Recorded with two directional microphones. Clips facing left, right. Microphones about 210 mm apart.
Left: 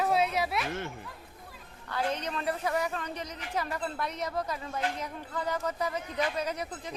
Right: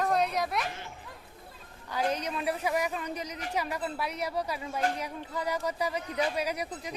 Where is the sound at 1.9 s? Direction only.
10° right (ahead or behind).